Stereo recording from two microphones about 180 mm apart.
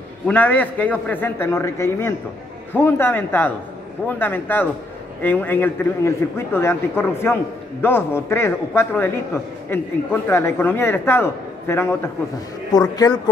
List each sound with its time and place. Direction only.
0.3 s a man's voice: 10° left (ahead or behind)